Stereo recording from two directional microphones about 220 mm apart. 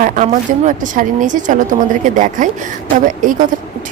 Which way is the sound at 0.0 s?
35° right (ahead or behind).